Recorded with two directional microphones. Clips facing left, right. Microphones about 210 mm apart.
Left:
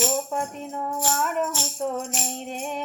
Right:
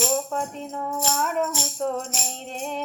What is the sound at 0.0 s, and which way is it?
Music, 5° left (ahead or behind).